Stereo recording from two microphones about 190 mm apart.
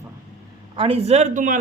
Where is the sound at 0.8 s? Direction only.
30° right (ahead or behind).